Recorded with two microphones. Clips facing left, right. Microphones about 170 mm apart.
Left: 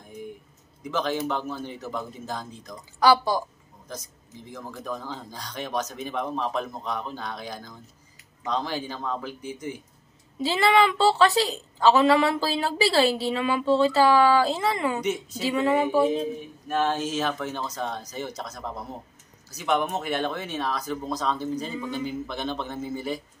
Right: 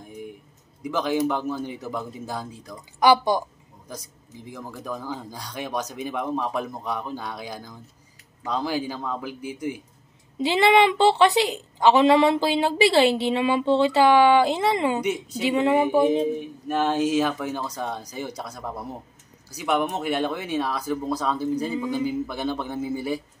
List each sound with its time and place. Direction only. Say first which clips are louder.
0.8 s a man's voice: right 3 dB; 10° right (ahead or behind)
10.4 s a woman's voice: right 3 dB; 20° right (ahead or behind)